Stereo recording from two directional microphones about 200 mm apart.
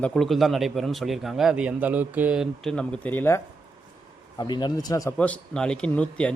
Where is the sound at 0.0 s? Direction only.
Centre (ahead or behind); by 5.1 s 15° left (ahead or behind).